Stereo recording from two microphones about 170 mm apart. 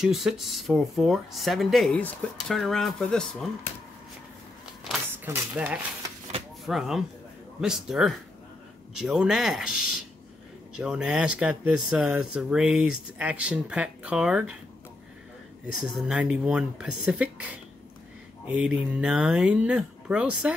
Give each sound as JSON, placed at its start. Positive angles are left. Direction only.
{"t": 0.0, "sound": "speech", "side_deg": 0}
{"t": 5.1, "sound": "speech", "side_deg": -10}
{"t": 15.6, "sound": "speech", "side_deg": -5}
{"t": 18.5, "sound": "speech", "side_deg": -5}